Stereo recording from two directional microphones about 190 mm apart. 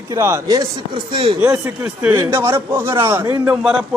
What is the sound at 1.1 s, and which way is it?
Speech, 25° right (ahead or behind).